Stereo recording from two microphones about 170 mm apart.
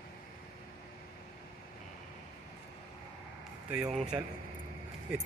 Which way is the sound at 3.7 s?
5° right (ahead or behind).